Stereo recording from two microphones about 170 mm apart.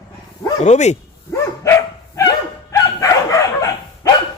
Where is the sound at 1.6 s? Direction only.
15° left (ahead or behind).